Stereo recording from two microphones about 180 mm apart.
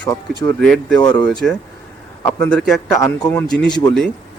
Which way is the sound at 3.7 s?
25° left (ahead or behind).